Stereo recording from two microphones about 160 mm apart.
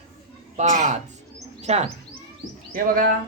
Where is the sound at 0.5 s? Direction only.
50° right (ahead or behind).